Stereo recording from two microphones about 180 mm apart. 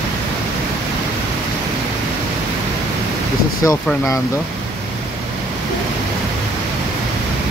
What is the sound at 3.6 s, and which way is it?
Speech, 20° left (ahead or behind).